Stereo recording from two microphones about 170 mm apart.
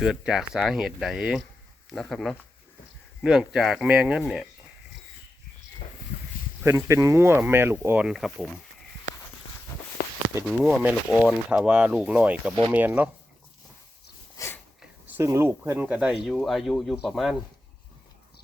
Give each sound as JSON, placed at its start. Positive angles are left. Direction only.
{"t": 0.0, "sound": "speech", "side_deg": -5}
{"t": 6.6, "sound": "speech", "side_deg": -15}
{"t": 8.0, "sound": "speech", "side_deg": 0}
{"t": 10.4, "sound": "speech", "side_deg": -5}
{"t": 14.3, "sound": "a sound", "side_deg": 15}
{"t": 14.8, "sound": "speech", "side_deg": -15}